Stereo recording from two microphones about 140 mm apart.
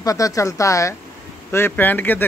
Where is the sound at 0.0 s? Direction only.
25° left (ahead or behind).